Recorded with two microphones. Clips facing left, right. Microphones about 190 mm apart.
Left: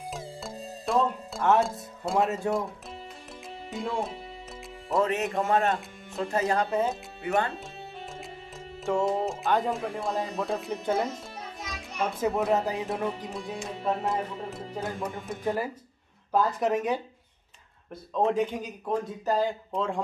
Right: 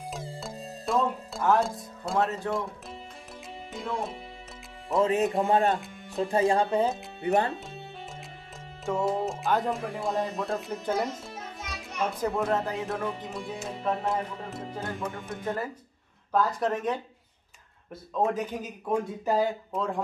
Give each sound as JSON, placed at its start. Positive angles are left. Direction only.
{"t": 0.1, "sound": "music", "side_deg": 0}
{"t": 2.4, "sound": "speech", "side_deg": 10}
{"t": 3.7, "sound": "speech", "side_deg": 0}
{"t": 5.0, "sound": "speech", "side_deg": -30}
{"t": 8.8, "sound": "speech", "side_deg": 0}
{"t": 18.1, "sound": "speech", "side_deg": -5}